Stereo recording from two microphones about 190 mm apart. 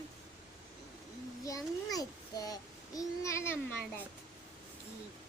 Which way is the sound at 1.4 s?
20° left (ahead or behind).